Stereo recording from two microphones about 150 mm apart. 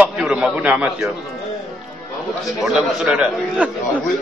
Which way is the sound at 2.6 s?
Centre (ahead or behind).